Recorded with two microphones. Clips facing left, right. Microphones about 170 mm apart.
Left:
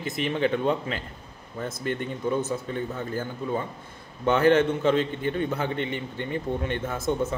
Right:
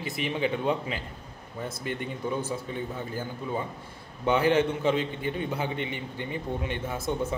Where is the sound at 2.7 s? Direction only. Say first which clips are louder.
Left 3 dB; 10° right (ahead or behind).